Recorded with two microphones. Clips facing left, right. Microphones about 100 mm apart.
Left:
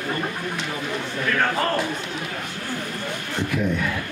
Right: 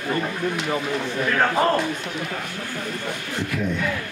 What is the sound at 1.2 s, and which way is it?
Speech, 15° right (ahead or behind).